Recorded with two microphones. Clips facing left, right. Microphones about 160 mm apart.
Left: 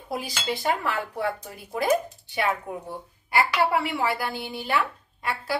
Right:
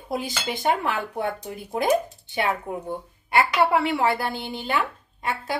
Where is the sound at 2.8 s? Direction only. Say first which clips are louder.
Right 5 dB; 25° right (ahead or behind).